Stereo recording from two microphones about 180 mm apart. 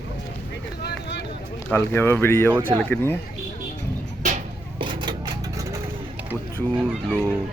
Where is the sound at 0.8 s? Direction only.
70° left (ahead or behind).